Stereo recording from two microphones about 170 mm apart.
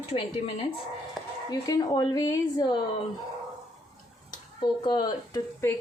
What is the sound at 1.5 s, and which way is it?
A woman's voice, 20° left (ahead or behind).